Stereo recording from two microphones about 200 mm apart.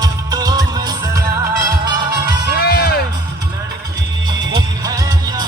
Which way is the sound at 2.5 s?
50° left (ahead or behind).